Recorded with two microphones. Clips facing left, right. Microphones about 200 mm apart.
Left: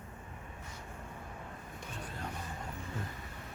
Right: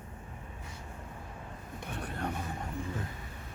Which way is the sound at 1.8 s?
65° right (ahead or behind).